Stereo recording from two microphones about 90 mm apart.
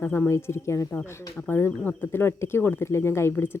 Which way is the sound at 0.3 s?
30° left (ahead or behind).